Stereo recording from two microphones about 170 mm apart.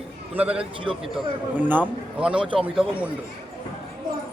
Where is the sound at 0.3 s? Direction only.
5° right (ahead or behind).